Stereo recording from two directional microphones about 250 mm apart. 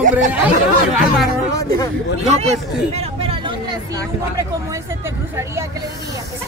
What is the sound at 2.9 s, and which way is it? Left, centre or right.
Hubbub, right.